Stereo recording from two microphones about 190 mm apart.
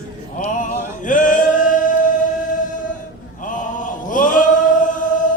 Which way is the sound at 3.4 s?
45° left (ahead or behind).